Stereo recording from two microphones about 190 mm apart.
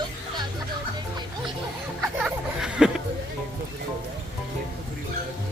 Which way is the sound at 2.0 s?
5° right (ahead or behind).